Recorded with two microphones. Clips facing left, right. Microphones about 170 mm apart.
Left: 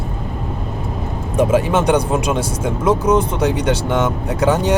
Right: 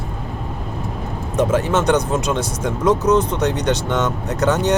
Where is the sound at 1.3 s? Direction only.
10° left (ahead or behind).